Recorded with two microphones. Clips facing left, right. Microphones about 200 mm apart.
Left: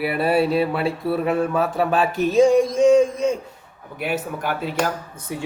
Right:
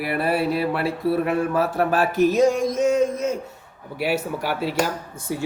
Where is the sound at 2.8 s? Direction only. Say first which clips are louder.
Left 3 dB; 5° right (ahead or behind).